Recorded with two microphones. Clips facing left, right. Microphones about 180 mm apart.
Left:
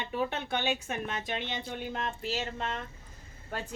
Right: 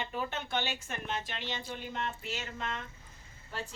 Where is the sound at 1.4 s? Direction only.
60° left (ahead or behind).